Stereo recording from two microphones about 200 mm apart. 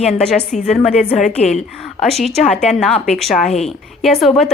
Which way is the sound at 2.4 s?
35° left (ahead or behind).